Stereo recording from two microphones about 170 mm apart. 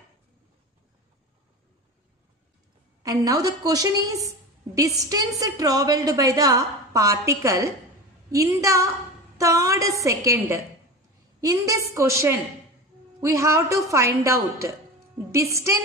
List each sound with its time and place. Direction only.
3.0 s a woman's voice: 20° right (ahead or behind)